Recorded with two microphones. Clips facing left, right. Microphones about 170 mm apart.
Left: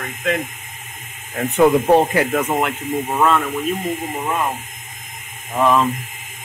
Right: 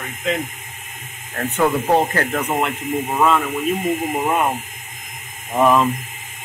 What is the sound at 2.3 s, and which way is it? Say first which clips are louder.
Speech: left 2 dB; centre (ahead or behind).